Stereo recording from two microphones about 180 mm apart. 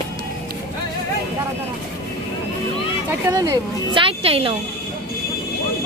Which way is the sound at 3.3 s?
20° right (ahead or behind).